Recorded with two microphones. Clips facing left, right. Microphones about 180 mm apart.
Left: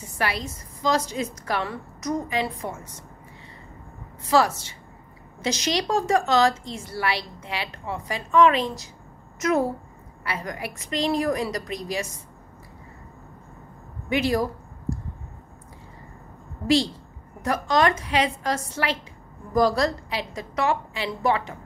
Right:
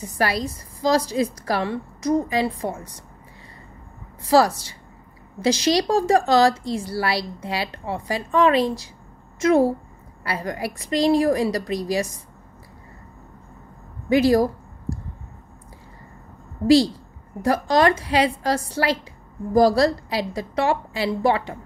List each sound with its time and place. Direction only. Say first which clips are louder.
0.0 s a woman's voice: right 5 dB; 35° right (ahead or behind)
4.3 s a woman's voice: right 4 dB; 35° right (ahead or behind)
14.0 s speech: right 6 dB; 35° right (ahead or behind)
16.6 s a woman's voice: right 6 dB; 35° right (ahead or behind)